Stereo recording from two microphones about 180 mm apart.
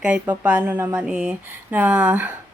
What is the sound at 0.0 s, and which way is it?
Speech, 5° right (ahead or behind).